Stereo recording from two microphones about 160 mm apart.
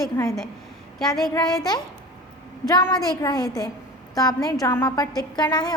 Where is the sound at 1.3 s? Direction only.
25° left (ahead or behind).